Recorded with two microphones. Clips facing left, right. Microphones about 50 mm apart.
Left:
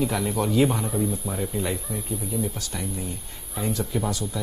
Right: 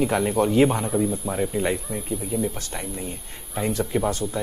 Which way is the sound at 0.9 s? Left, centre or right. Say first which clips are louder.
Right 3 dB; centre.